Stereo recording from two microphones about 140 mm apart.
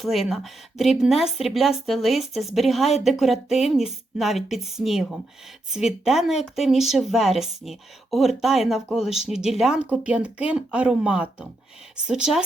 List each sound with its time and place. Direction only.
0.0 s speech: centre (ahead or behind)